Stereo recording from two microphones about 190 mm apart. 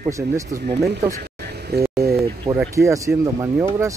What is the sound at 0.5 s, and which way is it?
Speech, 45° right (ahead or behind).